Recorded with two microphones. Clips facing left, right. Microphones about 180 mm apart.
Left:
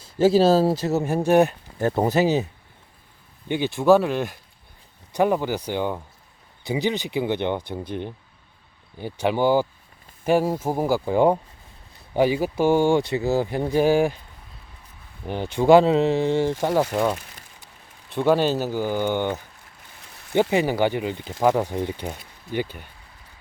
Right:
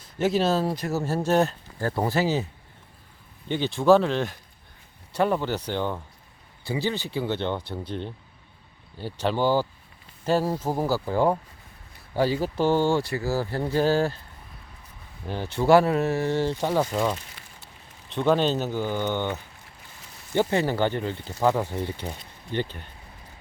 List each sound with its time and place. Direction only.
0.0 s speech: 30° left (ahead or behind)
3.5 s speech: 10° left (ahead or behind)
15.3 s speech: 15° left (ahead or behind)